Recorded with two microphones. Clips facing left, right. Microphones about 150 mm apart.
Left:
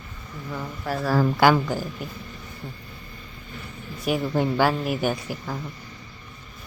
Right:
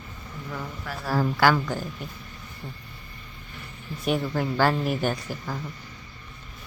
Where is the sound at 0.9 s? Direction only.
35° left (ahead or behind).